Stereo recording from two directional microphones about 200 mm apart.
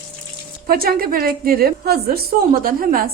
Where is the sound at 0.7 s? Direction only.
50° right (ahead or behind).